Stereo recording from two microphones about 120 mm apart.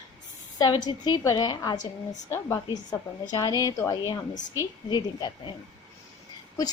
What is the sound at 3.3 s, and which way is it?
A woman's voice, 30° left (ahead or behind).